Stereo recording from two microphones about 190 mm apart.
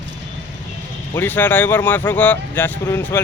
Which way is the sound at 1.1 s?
10° left (ahead or behind).